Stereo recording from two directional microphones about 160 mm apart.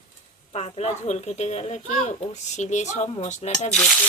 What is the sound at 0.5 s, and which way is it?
Speech, 40° left (ahead or behind).